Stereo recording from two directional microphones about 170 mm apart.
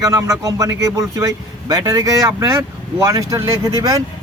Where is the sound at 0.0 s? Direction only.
20° right (ahead or behind).